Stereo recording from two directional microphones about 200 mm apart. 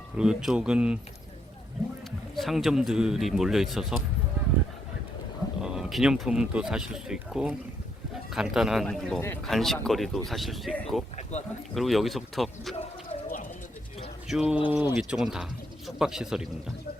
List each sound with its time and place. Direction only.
0.2 s speech: 5° right (ahead or behind)
2.3 s speech: centre (ahead or behind)
5.6 s speech: centre (ahead or behind)
11.2 s a sound: 35° left (ahead or behind)
11.7 s speech: centre (ahead or behind)
14.3 s speech: 5° right (ahead or behind)